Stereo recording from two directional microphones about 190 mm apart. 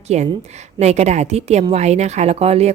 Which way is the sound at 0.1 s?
35° right (ahead or behind).